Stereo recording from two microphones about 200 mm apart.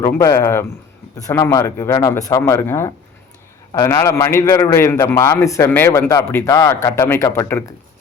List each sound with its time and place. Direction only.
0.0 s a man's voice: 15° left (ahead or behind)